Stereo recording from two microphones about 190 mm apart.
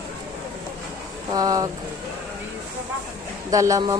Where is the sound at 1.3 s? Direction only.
20° right (ahead or behind).